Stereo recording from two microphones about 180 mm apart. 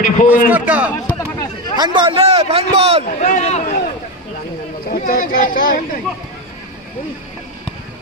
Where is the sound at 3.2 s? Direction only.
35° left (ahead or behind).